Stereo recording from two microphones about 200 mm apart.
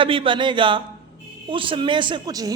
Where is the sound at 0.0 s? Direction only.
25° right (ahead or behind).